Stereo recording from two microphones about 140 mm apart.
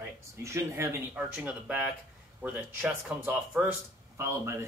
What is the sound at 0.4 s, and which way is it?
Speech, 20° right (ahead or behind).